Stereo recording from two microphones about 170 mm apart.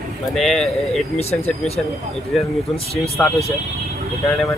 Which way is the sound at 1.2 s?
40° left (ahead or behind).